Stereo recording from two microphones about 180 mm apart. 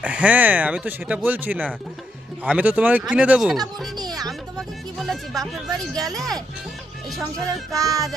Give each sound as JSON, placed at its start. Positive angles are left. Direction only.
{"t": 0.0, "sound": "speech", "side_deg": -5}
{"t": 3.9, "sound": "music", "side_deg": -20}
{"t": 4.3, "sound": "speech", "side_deg": 0}
{"t": 7.1, "sound": "speech", "side_deg": 0}
{"t": 7.7, "sound": "music", "side_deg": -20}